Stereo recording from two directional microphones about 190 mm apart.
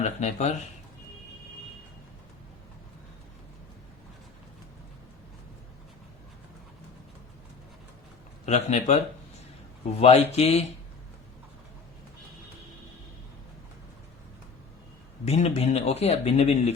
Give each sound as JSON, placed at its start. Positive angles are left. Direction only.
{"t": 0.0, "sound": "speech", "side_deg": 35}
{"t": 8.4, "sound": "speech", "side_deg": 35}
{"t": 10.0, "sound": "speech", "side_deg": 35}
{"t": 15.3, "sound": "speech", "side_deg": 35}